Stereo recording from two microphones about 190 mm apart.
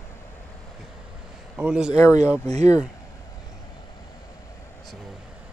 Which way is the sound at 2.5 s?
35° right (ahead or behind).